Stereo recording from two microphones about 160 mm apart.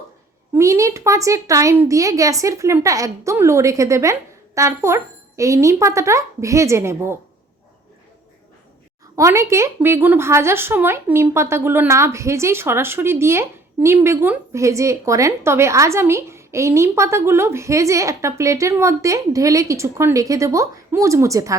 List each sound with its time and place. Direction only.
0.5 s speech: 20° right (ahead or behind)
9.1 s speech: 20° right (ahead or behind)